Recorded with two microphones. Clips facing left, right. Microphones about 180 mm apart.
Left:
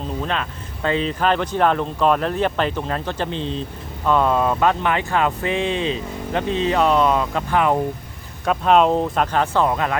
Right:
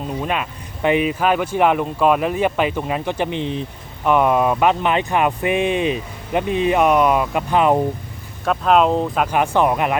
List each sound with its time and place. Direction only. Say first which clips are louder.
0.2 s speech: right 2 dB; 10° right (ahead or behind)
8.4 s speech: even; centre (ahead or behind)
9.2 s speech: right 2 dB; 15° right (ahead or behind)